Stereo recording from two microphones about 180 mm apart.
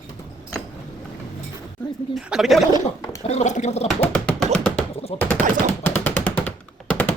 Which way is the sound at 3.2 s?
40° left (ahead or behind).